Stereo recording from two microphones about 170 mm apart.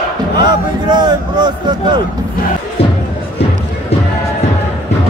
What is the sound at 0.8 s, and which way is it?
Speech, 25° right (ahead or behind).